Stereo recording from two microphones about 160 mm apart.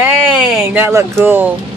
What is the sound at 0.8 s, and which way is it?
Speech, 15° right (ahead or behind).